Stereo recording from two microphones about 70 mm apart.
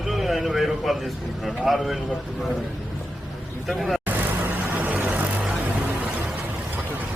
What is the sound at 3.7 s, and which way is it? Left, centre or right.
Speech, centre.